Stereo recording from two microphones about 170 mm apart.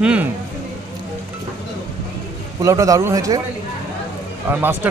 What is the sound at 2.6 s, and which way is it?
Speech, 20° right (ahead or behind).